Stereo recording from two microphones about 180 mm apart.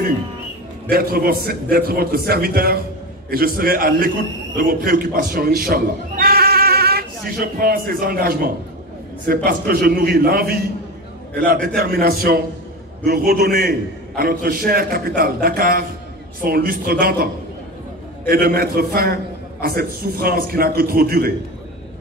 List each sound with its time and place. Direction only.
0.8 s a man's voice: 55° right (ahead or behind)
11.8 s a man's voice: 60° right (ahead or behind)
18.3 s a man's voice: 55° right (ahead or behind)